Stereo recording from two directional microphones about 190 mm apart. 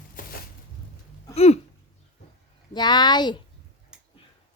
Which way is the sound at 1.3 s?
35° left (ahead or behind).